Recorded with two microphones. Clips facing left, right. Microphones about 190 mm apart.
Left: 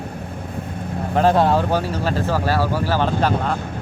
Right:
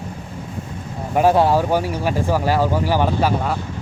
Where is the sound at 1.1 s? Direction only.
10° right (ahead or behind).